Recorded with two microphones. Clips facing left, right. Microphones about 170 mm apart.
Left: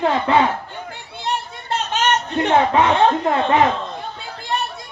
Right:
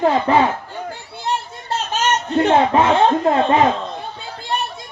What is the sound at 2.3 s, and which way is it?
A man's voice, 25° right (ahead or behind).